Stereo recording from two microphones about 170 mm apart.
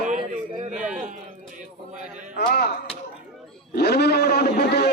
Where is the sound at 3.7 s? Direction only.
75° left (ahead or behind).